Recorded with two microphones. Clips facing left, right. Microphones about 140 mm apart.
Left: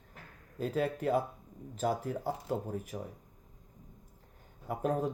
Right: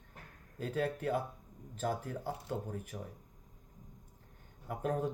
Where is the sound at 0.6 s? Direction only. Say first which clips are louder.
Left 3 dB; 90° left.